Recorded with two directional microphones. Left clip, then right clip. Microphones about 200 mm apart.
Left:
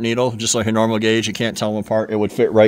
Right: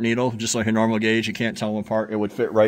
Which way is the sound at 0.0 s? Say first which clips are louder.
Left 4 dB; 25° left (ahead or behind).